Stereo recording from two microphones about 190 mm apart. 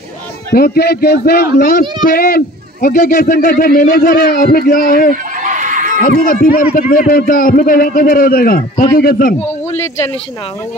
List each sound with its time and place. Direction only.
0.5 s a man's voice: 55° left (ahead or behind)
5.1 s a sound: 40° right (ahead or behind)
5.9 s speech: 45° left (ahead or behind)